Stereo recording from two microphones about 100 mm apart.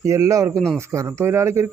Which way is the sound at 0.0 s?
30° right (ahead or behind).